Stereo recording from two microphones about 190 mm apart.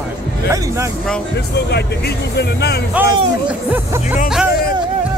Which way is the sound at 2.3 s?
60° left (ahead or behind).